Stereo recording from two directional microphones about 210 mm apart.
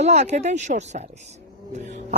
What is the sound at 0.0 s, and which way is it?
Speech, 30° right (ahead or behind).